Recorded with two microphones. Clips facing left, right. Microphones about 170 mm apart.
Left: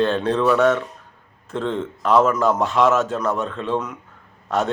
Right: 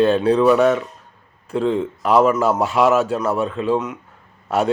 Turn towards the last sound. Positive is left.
turn(degrees=-15)  # may be behind; listen again after turning